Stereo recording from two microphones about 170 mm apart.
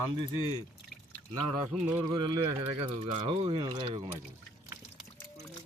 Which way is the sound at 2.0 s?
25° right (ahead or behind).